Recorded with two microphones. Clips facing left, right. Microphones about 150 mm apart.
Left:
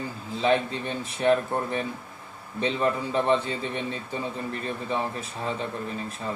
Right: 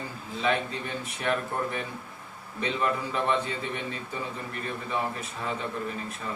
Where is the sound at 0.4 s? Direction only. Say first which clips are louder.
Left 4 dB; 30° left (ahead or behind).